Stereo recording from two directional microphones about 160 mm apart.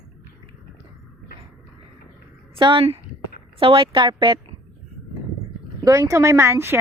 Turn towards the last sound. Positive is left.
turn(degrees=-15)  # may be behind; listen again after turning